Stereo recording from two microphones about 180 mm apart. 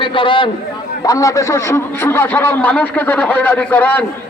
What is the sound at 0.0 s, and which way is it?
A man's voice, 30° left (ahead or behind).